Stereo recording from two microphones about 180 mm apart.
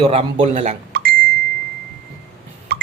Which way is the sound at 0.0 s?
35° right (ahead or behind).